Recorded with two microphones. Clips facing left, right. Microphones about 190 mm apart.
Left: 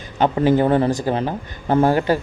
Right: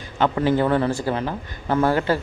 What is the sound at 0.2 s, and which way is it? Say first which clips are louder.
Speech: left 3 dB; 15° left (ahead or behind).